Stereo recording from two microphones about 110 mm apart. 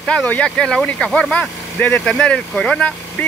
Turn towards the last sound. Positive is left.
turn(degrees=10)  # may be behind; listen again after turning